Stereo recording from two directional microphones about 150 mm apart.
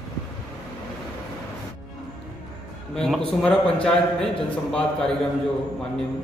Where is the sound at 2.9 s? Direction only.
Centre (ahead or behind).